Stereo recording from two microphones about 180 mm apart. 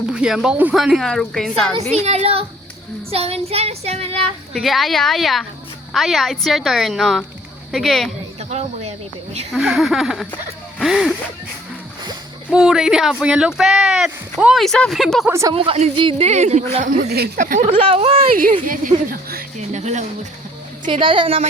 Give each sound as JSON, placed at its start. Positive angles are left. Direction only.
{"t": 0.0, "sound": "speech", "side_deg": -5}
{"t": 1.8, "sound": "speech", "side_deg": -40}
{"t": 3.1, "sound": "child singing", "side_deg": -35}
{"t": 4.5, "sound": "speech", "side_deg": 0}
{"t": 8.4, "sound": "speech", "side_deg": -35}
{"t": 9.5, "sound": "speech", "side_deg": 0}
{"t": 12.5, "sound": "speech", "side_deg": -5}
{"t": 15.3, "sound": "speech", "side_deg": -15}
{"t": 15.5, "sound": "child singing", "side_deg": -35}
{"t": 17.1, "sound": "speech", "side_deg": -60}
{"t": 17.7, "sound": "child singing", "side_deg": -30}
{"t": 18.3, "sound": "speech", "side_deg": -50}
{"t": 19.7, "sound": "child singing", "side_deg": -40}
{"t": 20.8, "sound": "a woman's voice", "side_deg": -30}